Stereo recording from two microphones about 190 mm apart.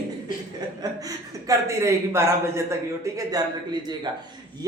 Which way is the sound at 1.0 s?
20° right (ahead or behind).